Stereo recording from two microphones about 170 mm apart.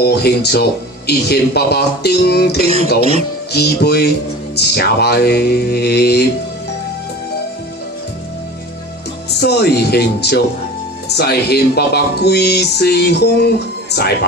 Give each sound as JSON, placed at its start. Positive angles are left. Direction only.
{"t": 0.0, "sound": "speech", "side_deg": 70}
{"t": 2.6, "sound": "speech", "side_deg": -35}
{"t": 3.5, "sound": "speech", "side_deg": 70}
{"t": 9.4, "sound": "speech", "side_deg": 75}